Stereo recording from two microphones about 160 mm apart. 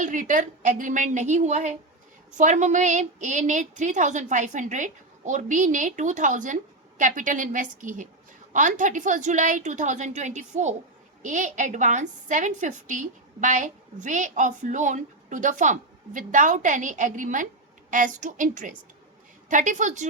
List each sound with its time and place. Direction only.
0.0 s a woman's voice: 55° right (ahead or behind)